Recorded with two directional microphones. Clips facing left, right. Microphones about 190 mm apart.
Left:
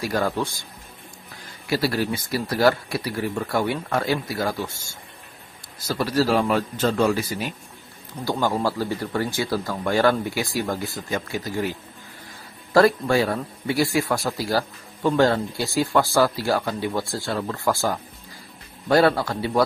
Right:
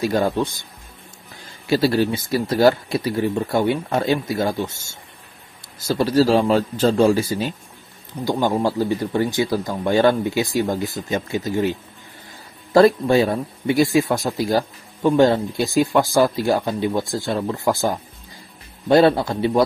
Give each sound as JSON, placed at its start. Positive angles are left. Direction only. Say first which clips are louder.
{"t": 0.0, "sound": "a man's voice", "louder": "right 4 dB", "side_deg": -20}
{"t": 1.7, "sound": "a man's voice", "louder": "right 5 dB", "side_deg": -25}
{"t": 5.8, "sound": "a man's voice", "louder": "right 5 dB", "side_deg": -25}
{"t": 12.7, "sound": "a man's voice", "louder": "right 4 dB", "side_deg": -20}